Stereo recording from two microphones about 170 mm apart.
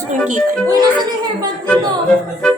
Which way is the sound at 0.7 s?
25° right (ahead or behind).